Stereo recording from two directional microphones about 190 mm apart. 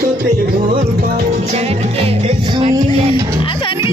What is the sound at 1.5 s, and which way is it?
Music, 35° right (ahead or behind).